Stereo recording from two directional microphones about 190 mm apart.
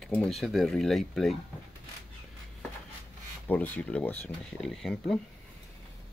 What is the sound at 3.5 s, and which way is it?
Speech, 10° left (ahead or behind).